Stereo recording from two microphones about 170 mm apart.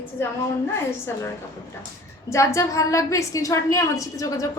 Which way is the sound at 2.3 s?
15° left (ahead or behind).